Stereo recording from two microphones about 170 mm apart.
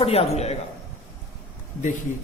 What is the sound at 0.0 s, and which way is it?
Speech, 35° left (ahead or behind).